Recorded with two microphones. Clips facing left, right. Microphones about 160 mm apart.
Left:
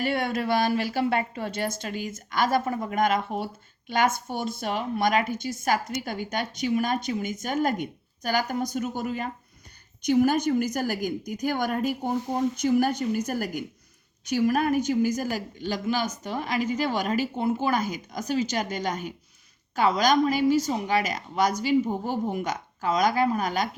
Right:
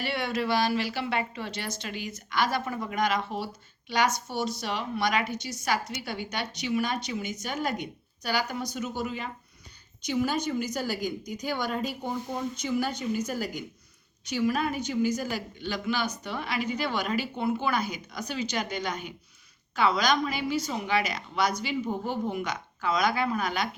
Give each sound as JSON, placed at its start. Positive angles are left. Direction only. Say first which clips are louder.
{"t": 0.0, "sound": "speech", "louder": "left 3 dB", "side_deg": 45}